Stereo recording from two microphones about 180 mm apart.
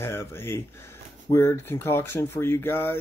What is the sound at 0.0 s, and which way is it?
Speech, 15° left (ahead or behind).